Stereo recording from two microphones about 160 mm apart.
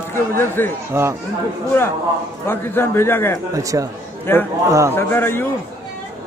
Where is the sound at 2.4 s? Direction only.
15° left (ahead or behind).